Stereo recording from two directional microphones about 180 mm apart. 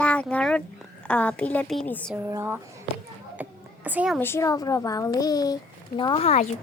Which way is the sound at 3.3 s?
10° right (ahead or behind).